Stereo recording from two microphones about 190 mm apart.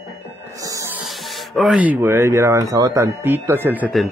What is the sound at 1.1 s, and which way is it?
Speech, centre (ahead or behind).